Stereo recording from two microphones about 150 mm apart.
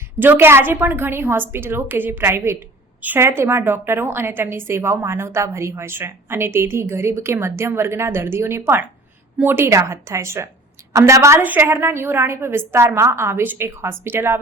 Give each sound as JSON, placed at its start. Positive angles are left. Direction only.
{"t": 0.2, "sound": "a woman's voice", "side_deg": -15}